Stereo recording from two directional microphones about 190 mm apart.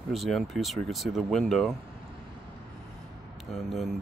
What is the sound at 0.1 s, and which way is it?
Speech, centre (ahead or behind).